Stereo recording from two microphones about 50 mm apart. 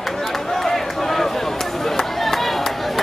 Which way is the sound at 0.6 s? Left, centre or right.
Centre.